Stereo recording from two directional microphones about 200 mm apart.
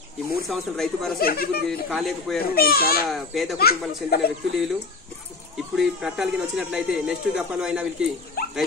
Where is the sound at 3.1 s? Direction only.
Centre (ahead or behind).